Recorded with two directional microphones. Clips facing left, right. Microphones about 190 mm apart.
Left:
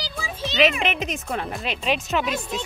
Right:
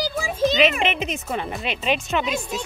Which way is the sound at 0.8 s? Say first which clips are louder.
Right 2 dB; centre (ahead or behind).